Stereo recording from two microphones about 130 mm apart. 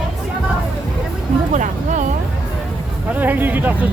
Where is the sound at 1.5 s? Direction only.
75° right (ahead or behind).